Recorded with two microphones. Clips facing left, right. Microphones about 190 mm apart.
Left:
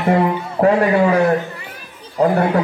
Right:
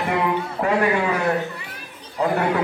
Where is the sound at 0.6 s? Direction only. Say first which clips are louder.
Left 8 dB; 35° left (ahead or behind).